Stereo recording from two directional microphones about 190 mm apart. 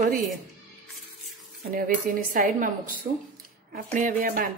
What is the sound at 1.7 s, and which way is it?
Speech, 45° right (ahead or behind).